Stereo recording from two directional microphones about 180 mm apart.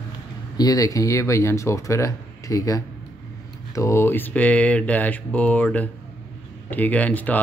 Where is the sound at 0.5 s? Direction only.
20° left (ahead or behind).